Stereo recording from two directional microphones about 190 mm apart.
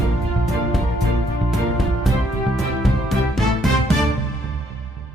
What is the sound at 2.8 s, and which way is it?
Music, centre (ahead or behind).